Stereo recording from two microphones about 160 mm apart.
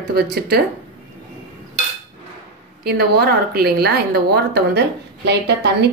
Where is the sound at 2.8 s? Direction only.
80° right.